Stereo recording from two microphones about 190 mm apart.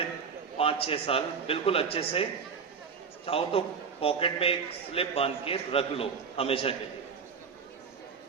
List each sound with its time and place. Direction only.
0.5 s a man's voice: 30° left (ahead or behind)
3.2 s a man's voice: 30° left (ahead or behind)